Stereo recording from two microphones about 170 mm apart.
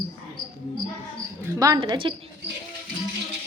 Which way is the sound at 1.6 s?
20° right (ahead or behind).